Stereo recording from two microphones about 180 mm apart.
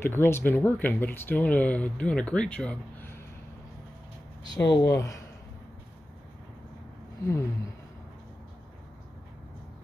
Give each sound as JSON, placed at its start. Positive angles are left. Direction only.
{"t": 0.0, "sound": "speech", "side_deg": 10}
{"t": 4.7, "sound": "speech", "side_deg": 15}
{"t": 7.2, "sound": "speech", "side_deg": 15}